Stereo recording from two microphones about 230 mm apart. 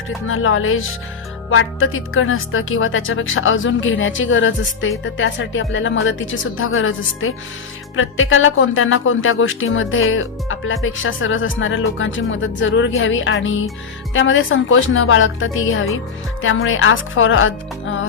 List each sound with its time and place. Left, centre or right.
0.3 s a woman's voice: left